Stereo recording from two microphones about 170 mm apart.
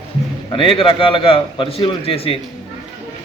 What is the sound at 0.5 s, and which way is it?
A man's voice, 30° left (ahead or behind).